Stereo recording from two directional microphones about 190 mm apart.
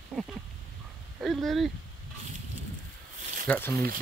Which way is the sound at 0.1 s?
5° right (ahead or behind).